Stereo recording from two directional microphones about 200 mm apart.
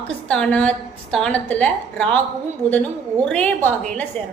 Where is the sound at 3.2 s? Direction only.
5° left (ahead or behind).